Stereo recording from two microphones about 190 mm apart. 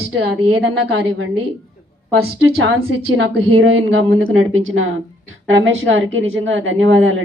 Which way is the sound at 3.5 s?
90° right.